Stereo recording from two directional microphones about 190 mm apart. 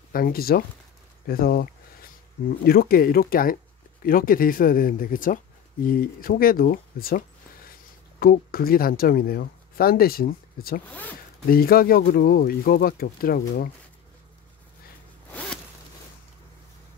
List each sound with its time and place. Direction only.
0.1 s speech: 50° left (ahead or behind)
1.2 s a sound: 50° left (ahead or behind)
2.6 s speech: 50° left (ahead or behind)
10.9 s speech: 10° left (ahead or behind)
11.4 s speech: 50° left (ahead or behind)